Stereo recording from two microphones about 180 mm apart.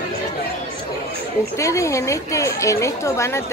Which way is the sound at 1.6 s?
15° left (ahead or behind).